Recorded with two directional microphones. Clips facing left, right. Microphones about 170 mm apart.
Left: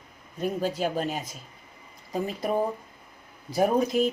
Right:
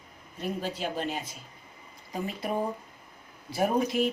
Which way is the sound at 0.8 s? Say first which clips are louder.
Left 4 dB; 45° left (ahead or behind).